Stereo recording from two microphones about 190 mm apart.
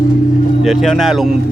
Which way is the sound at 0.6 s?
Centre (ahead or behind).